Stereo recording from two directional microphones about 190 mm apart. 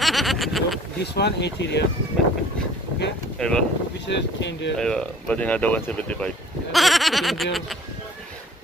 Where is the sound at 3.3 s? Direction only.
5° left (ahead or behind).